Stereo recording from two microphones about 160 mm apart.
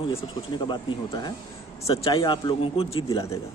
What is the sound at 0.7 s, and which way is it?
A man's voice, 25° left (ahead or behind).